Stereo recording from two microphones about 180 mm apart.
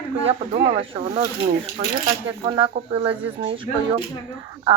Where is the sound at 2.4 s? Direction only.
30° right (ahead or behind).